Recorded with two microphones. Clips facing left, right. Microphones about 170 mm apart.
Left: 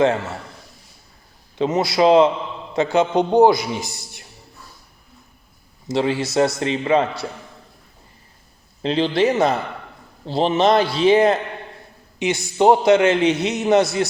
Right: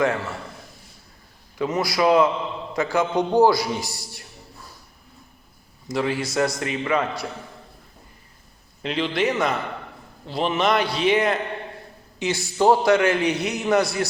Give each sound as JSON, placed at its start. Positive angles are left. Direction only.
{"t": 0.0, "sound": "a man's voice", "side_deg": 25}
{"t": 1.5, "sound": "a man's voice", "side_deg": 25}
{"t": 5.9, "sound": "a man's voice", "side_deg": 25}
{"t": 8.8, "sound": "a man's voice", "side_deg": 30}
{"t": 12.2, "sound": "a man's voice", "side_deg": 20}